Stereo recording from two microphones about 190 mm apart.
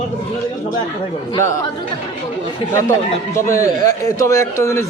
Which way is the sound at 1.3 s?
15° left (ahead or behind).